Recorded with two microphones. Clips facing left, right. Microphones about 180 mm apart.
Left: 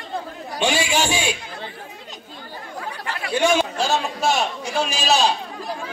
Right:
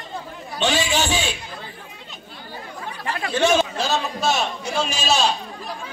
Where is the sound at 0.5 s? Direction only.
10° left (ahead or behind).